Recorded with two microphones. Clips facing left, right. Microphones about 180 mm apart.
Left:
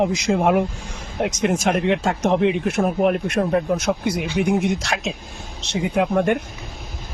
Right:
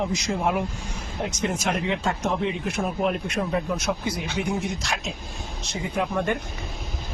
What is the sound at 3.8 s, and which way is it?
Speech, 70° left (ahead or behind).